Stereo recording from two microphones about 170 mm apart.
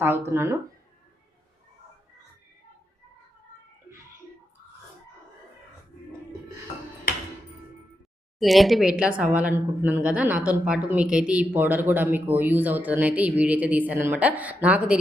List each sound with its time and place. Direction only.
0.3 s a woman's voice: 15° right (ahead or behind)
8.4 s a woman's voice: centre (ahead or behind)